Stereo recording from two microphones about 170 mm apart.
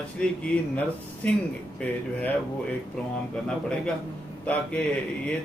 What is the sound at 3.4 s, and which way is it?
A man's voice, 5° left (ahead or behind).